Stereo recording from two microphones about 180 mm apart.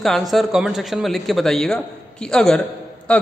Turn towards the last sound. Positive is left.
turn(degrees=5)  # may be behind; listen again after turning